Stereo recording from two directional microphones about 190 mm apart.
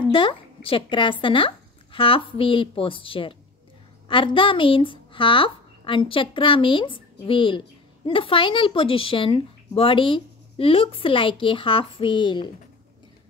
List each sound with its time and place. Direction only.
0.0 s speech: 25° left (ahead or behind)